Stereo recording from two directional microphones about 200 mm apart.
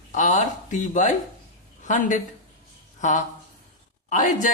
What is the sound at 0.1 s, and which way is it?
A man's voice, 35° left (ahead or behind).